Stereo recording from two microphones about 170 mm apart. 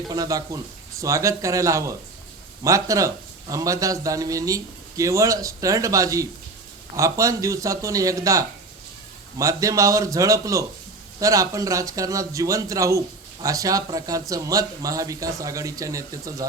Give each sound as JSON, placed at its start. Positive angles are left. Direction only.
{"t": 0.1, "sound": "speech", "side_deg": -20}